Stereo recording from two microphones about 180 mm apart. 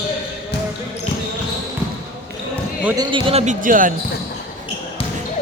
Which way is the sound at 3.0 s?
25° right (ahead or behind).